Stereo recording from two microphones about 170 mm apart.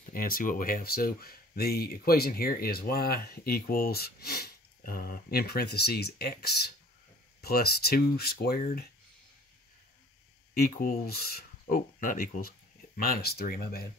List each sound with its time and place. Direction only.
0.1 s speech: 55° left (ahead or behind)
10.5 s speech: 60° left (ahead or behind)